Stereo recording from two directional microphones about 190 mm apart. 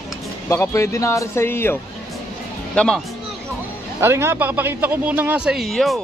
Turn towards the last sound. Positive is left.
turn(degrees=0)  # may be behind; listen again after turning